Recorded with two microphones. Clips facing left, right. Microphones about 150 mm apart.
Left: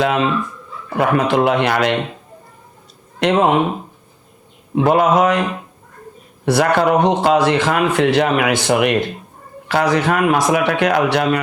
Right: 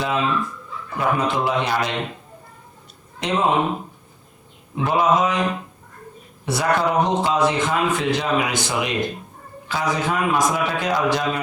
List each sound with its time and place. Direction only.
0.0 s a man's voice: 70° left (ahead or behind)
3.2 s mantra: 60° left (ahead or behind)
4.7 s mantra: 60° left (ahead or behind)
6.4 s a man's voice: 70° left (ahead or behind)